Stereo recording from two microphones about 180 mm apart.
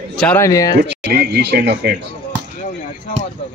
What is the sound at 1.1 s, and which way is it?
Speech, 65° right (ahead or behind).